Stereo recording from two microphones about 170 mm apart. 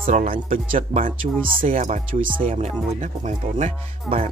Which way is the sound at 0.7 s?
35° right (ahead or behind).